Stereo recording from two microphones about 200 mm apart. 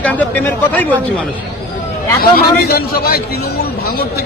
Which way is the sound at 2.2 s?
50° left (ahead or behind).